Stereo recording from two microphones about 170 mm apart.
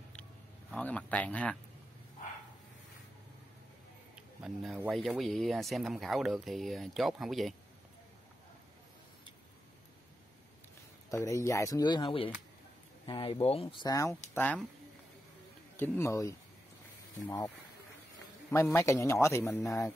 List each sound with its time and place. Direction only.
0.1 s a sound: 5° left (ahead or behind)
4.1 s a sound: 5° right (ahead or behind)
4.9 s speech: centre (ahead or behind)
11.1 s speech: 20° left (ahead or behind)
15.7 s a man's voice: 10° left (ahead or behind)
18.5 s a man's voice: 15° left (ahead or behind)